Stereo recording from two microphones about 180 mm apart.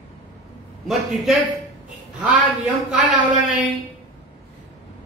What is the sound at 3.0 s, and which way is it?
Speech, 45° right (ahead or behind).